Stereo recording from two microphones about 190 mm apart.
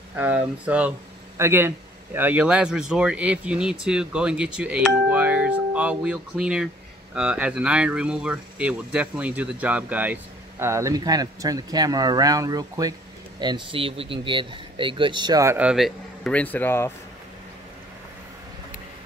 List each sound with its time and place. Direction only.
0.1 s speech: 10° right (ahead or behind); by 16.9 s 10° left (ahead or behind)